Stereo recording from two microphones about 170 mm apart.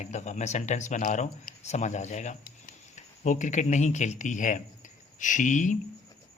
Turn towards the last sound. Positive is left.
turn(degrees=45)  # may be behind; listen again after turning